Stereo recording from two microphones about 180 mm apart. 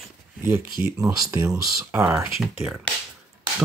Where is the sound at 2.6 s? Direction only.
Centre (ahead or behind).